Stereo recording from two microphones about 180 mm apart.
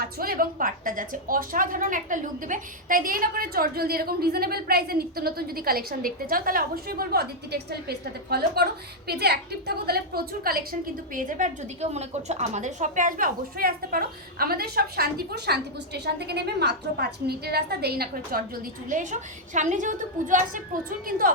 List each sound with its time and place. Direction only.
0.0 s a woman's voice: 55° right (ahead or behind)